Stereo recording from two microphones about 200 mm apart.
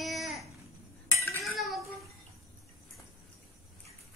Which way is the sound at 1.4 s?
Centre (ahead or behind).